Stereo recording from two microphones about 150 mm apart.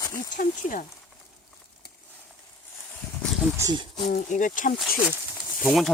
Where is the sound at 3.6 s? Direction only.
25° right (ahead or behind).